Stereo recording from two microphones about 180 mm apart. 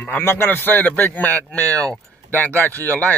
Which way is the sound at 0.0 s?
10° left (ahead or behind).